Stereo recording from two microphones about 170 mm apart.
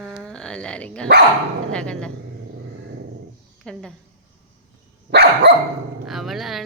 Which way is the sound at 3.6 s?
5° left (ahead or behind).